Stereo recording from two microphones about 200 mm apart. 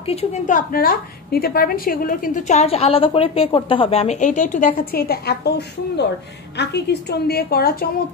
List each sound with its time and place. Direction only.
0.0 s a woman's voice: 30° left (ahead or behind); by 5.5 s 50° left (ahead or behind)
6.5 s a woman's voice: 55° left (ahead or behind)